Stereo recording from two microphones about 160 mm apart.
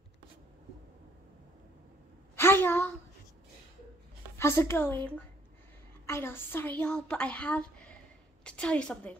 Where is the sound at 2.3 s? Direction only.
15° left (ahead or behind).